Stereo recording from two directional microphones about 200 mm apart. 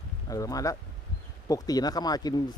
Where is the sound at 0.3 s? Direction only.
15° left (ahead or behind).